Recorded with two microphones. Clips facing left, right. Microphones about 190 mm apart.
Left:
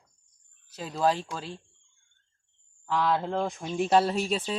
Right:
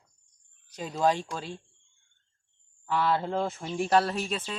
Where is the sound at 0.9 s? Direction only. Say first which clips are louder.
Even; 10° right (ahead or behind).